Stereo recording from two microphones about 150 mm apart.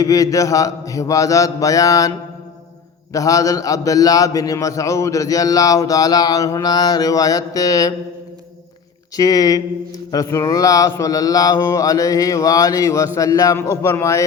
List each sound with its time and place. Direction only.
0.0 s a man's voice: 25° left (ahead or behind)
9.1 s a man's voice: 25° left (ahead or behind)